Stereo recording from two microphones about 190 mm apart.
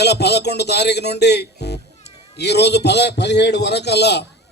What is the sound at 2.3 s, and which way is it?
A man's voice, 60° left (ahead or behind).